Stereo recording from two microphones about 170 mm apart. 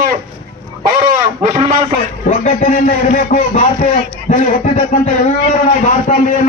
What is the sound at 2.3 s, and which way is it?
A man's voice, 45° left (ahead or behind).